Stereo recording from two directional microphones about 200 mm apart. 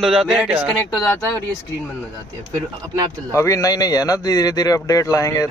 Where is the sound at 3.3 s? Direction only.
15° left (ahead or behind).